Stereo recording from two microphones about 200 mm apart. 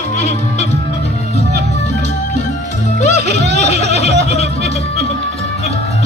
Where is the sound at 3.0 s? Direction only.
35° left (ahead or behind).